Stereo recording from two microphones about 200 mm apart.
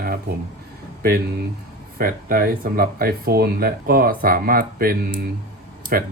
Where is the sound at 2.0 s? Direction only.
45° right (ahead or behind).